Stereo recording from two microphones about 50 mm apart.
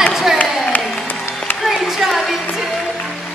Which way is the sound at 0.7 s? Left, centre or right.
Left.